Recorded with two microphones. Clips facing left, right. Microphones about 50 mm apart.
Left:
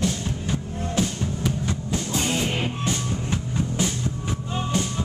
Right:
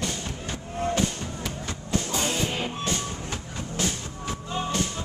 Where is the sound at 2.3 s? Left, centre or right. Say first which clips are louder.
Left 3 dB; centre.